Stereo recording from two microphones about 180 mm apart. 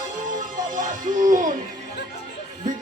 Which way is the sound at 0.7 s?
45° right (ahead or behind).